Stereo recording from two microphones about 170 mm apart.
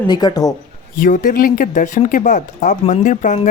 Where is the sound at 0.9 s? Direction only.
55° left (ahead or behind).